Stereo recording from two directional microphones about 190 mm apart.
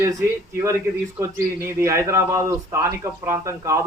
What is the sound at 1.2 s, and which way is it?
A man's voice, 15° right (ahead or behind).